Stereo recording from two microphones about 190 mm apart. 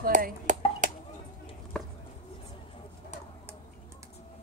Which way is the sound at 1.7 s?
5° left (ahead or behind).